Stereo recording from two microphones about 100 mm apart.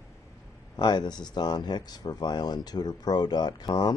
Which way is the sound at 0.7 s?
45° left (ahead or behind).